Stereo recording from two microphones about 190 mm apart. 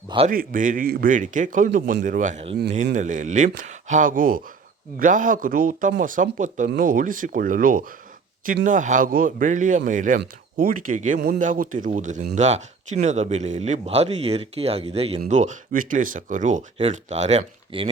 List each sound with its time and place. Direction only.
0.3 s a man's voice: 45° right (ahead or behind)